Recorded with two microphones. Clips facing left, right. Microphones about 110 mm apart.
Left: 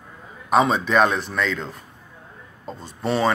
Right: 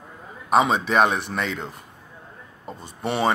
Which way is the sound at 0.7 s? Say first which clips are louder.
Left 1 dB; 55° right (ahead or behind).